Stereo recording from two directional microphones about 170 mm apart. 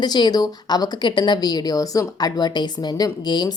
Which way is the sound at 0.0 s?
25° left (ahead or behind).